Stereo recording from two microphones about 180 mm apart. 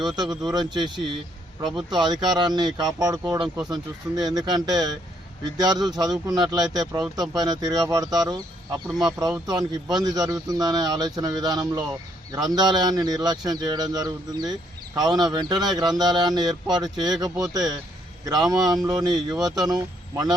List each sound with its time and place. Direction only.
0.0 s a man's voice: 25° right (ahead or behind)